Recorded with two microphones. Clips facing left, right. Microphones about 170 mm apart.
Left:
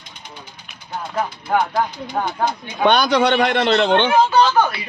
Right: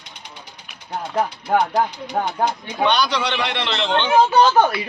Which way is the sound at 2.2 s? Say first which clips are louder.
Even; 40° right (ahead or behind).